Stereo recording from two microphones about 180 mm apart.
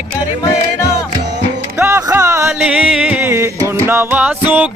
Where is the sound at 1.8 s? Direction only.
15° right (ahead or behind).